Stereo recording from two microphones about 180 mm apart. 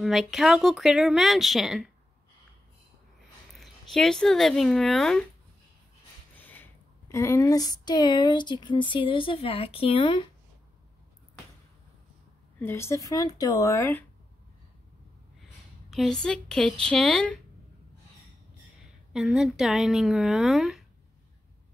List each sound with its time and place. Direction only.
0.0 s speech: centre (ahead or behind)
3.5 s speech: centre (ahead or behind)
6.3 s a sound: 10° left (ahead or behind); by 10.2 s 30° left (ahead or behind)
12.5 s speech: 15° left (ahead or behind)
15.9 s speech: centre (ahead or behind)
19.1 s speech: centre (ahead or behind)